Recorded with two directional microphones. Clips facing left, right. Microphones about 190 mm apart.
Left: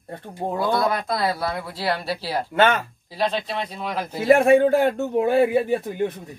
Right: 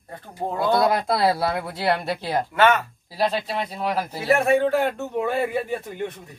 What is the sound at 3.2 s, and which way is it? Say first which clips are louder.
Speech: right 1 dB; 10° right (ahead or behind).